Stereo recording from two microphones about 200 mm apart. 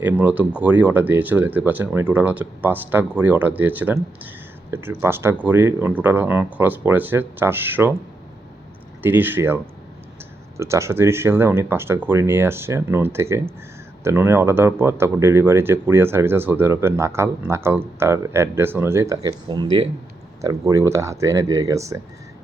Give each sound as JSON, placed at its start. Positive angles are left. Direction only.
{"t": 0.0, "sound": "speech", "side_deg": -5}
{"t": 9.0, "sound": "speech", "side_deg": -10}
{"t": 10.6, "sound": "speech", "side_deg": -15}